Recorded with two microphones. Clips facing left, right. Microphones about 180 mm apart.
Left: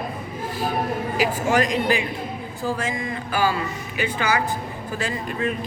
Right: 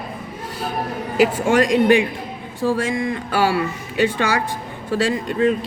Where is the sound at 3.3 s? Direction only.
75° right (ahead or behind).